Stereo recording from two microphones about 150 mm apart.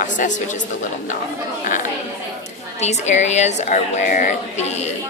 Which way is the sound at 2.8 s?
50° left (ahead or behind).